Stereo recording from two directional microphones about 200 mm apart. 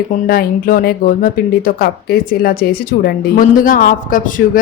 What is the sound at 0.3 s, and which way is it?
Speech, 45° left (ahead or behind).